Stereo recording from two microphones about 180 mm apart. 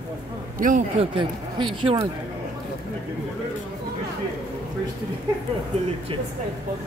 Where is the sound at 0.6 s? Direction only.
45° right (ahead or behind).